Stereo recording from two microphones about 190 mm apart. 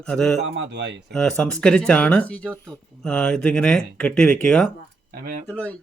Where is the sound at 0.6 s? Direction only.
65° right (ahead or behind).